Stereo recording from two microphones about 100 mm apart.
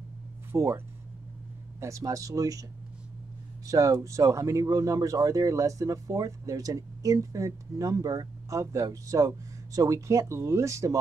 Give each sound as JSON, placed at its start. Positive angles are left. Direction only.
{"t": 0.5, "sound": "speech", "side_deg": -25}
{"t": 3.6, "sound": "speech", "side_deg": -35}